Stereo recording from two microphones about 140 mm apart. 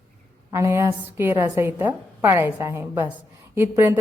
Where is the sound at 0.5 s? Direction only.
20° right (ahead or behind).